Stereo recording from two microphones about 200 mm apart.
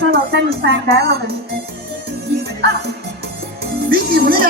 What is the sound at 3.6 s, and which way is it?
Speech, 50° right (ahead or behind).